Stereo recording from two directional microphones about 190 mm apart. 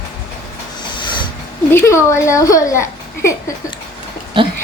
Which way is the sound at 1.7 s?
15° left (ahead or behind).